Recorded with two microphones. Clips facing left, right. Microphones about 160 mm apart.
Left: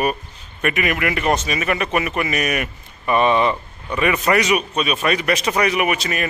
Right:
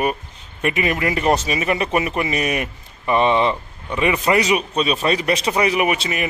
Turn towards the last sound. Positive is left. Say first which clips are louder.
# right 1 dB
turn(degrees=-30)  # may be behind; listen again after turning